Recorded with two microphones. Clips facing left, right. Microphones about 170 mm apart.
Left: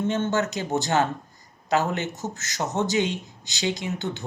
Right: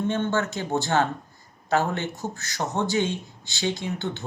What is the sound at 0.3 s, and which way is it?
Speech, 20° left (ahead or behind).